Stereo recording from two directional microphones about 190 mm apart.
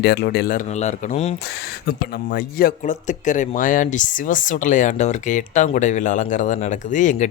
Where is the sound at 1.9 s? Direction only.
55° left (ahead or behind).